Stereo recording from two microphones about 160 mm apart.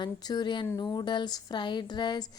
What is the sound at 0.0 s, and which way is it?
A woman's voice, 25° left (ahead or behind).